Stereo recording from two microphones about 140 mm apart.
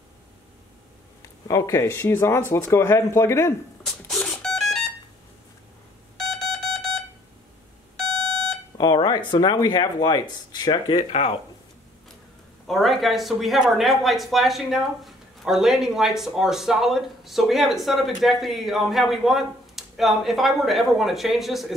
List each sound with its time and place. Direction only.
1.5 s speech: 20° left (ahead or behind)
3.8 s alarm clock: 5° left (ahead or behind)
6.1 s alarm: centre (ahead or behind)
8.7 s speech: 30° left (ahead or behind)
12.6 s speech: centre (ahead or behind)